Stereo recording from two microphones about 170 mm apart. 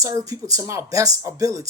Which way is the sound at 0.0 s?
20° right (ahead or behind).